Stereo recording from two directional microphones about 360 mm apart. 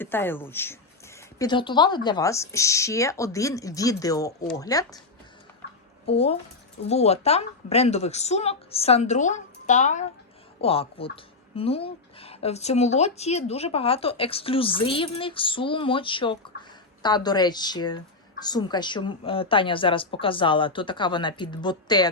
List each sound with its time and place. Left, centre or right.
0.0 s a woman's voice: centre
5.6 s a sound: left
6.1 s a woman's voice: centre